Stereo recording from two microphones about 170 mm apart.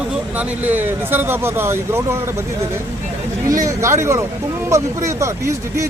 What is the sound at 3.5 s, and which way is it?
Speech, 20° right (ahead or behind).